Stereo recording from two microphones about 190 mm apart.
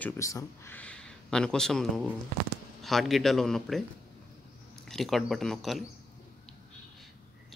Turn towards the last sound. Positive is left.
turn(degrees=0)  # may be behind; listen again after turning